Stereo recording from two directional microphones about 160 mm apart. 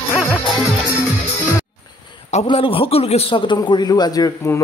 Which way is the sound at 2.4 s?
35° left (ahead or behind).